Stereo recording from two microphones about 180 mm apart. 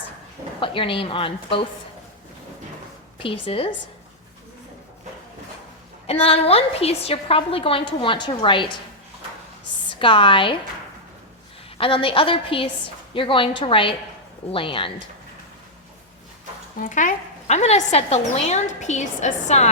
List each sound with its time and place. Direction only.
0.6 s a woman's voice: 30° left (ahead or behind)
3.4 s a woman's voice: 30° left (ahead or behind)
6.1 s a woman's voice: 35° left (ahead or behind)
9.9 s a woman's voice: 25° left (ahead or behind)
11.8 s a woman's voice: 30° left (ahead or behind)
16.7 s a woman's voice: 45° left (ahead or behind)